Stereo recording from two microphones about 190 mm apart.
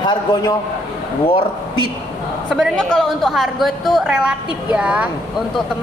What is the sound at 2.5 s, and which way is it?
A woman's voice, centre (ahead or behind).